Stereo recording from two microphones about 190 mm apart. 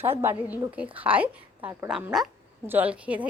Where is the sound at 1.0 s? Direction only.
10° right (ahead or behind).